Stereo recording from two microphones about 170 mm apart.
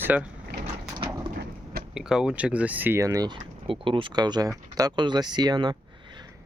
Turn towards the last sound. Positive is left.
turn(degrees=-25)  # may be behind; listen again after turning